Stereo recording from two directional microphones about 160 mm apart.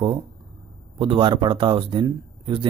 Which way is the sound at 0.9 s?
35° right (ahead or behind).